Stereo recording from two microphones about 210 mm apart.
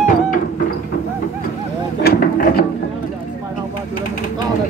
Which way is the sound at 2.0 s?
45° left (ahead or behind).